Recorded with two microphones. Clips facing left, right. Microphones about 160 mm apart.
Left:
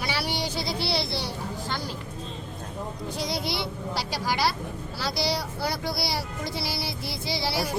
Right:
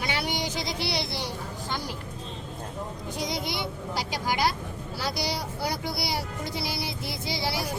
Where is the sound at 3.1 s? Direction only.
15° right (ahead or behind).